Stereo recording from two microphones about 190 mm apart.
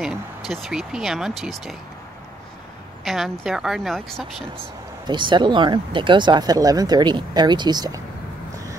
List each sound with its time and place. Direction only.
0.0 s speech: centre (ahead or behind)
3.0 s speech: centre (ahead or behind)
5.0 s speech: 25° right (ahead or behind)